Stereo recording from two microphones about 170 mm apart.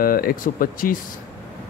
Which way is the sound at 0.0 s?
60° left (ahead or behind).